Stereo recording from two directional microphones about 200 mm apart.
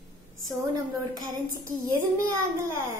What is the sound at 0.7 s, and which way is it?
A woman's voice, 20° right (ahead or behind).